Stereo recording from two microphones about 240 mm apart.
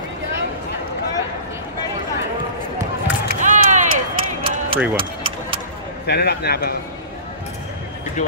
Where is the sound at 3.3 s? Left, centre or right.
Right.